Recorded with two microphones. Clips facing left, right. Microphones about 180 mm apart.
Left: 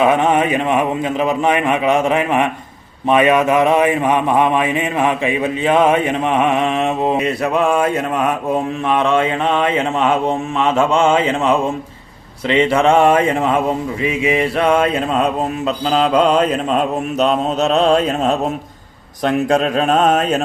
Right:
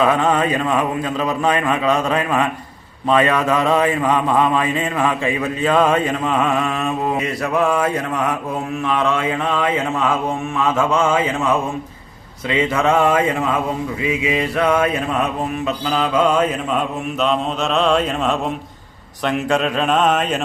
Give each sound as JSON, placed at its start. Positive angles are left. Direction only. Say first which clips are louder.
{"t": 0.0, "sound": "mantra", "louder": "left 2 dB", "side_deg": 20}
{"t": 19.2, "sound": "speech", "louder": "left 3 dB", "side_deg": 40}